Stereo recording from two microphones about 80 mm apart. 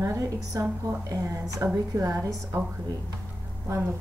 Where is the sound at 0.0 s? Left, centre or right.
Right.